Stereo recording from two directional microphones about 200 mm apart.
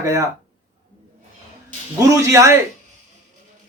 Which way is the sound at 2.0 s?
15° right (ahead or behind).